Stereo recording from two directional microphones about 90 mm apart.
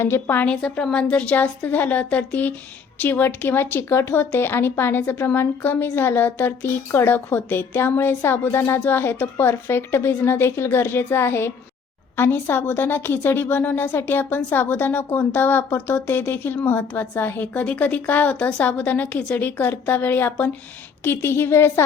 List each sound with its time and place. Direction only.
0.0 s a woman's voice: 25° left (ahead or behind)
0.4 s a woman's voice: 10° left (ahead or behind); by 21.8 s 25° left (ahead or behind)